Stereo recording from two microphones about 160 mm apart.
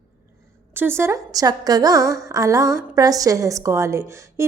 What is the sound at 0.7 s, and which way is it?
A woman's voice, 15° right (ahead or behind).